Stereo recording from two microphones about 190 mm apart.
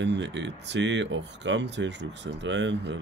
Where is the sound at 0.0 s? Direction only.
70° right (ahead or behind).